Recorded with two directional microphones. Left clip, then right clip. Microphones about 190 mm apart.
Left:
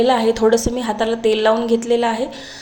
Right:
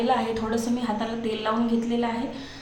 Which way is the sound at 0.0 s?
40° left (ahead or behind).